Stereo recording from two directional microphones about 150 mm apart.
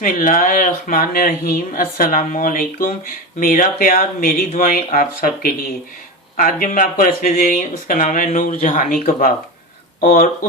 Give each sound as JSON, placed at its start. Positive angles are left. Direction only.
{"t": 0.0, "sound": "speech", "side_deg": 65}
{"t": 6.3, "sound": "speech", "side_deg": 65}
{"t": 10.0, "sound": "speech", "side_deg": 65}